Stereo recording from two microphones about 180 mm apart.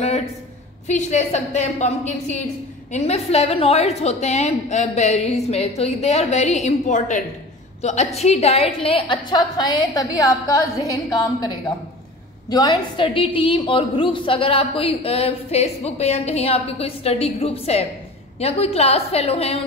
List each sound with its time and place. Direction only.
0.8 s a woman's voice: 40° left (ahead or behind)